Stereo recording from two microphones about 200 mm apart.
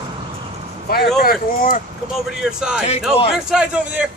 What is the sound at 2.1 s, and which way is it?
Speech, centre (ahead or behind).